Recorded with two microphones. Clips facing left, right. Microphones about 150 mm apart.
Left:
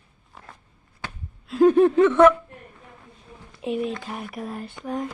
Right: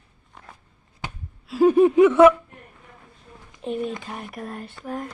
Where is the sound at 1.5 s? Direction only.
5° right (ahead or behind).